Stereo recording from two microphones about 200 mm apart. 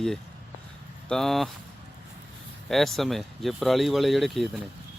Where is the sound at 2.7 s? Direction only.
Centre (ahead or behind).